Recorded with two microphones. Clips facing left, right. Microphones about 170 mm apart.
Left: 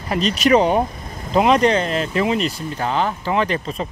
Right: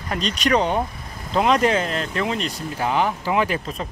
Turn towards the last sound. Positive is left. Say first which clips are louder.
# left 2 dB
turn(degrees=0)  # may be behind; listen again after turning